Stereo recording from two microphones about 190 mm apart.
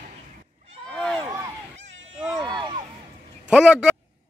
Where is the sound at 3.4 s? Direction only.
5° right (ahead or behind).